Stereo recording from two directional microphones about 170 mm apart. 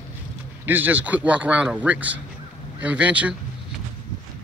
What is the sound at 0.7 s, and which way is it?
A man's voice, 10° right (ahead or behind).